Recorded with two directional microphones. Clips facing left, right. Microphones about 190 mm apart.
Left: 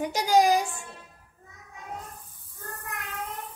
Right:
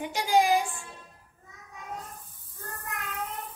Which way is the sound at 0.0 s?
40° left (ahead or behind).